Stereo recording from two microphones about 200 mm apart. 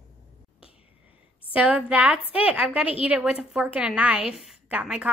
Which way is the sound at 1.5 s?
5° right (ahead or behind).